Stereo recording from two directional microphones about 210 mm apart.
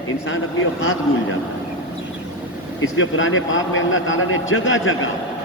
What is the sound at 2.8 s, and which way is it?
A man's voice, 70° left (ahead or behind).